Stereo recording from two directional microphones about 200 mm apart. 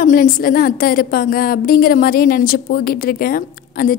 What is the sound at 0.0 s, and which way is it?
A woman's voice, 45° left (ahead or behind).